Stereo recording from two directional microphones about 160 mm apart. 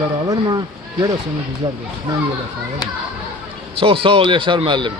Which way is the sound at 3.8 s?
35° right (ahead or behind).